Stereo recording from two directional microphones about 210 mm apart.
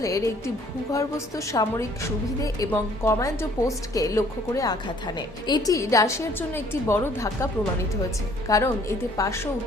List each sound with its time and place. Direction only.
0.0 s a woman's voice: 15° left (ahead or behind)